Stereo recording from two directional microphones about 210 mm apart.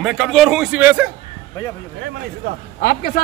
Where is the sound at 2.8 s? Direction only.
45° left (ahead or behind).